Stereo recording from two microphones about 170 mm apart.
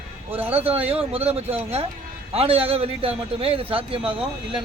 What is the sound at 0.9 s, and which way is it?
A man's voice, 35° right (ahead or behind).